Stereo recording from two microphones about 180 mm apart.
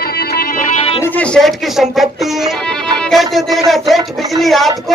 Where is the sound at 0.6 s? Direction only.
35° left (ahead or behind).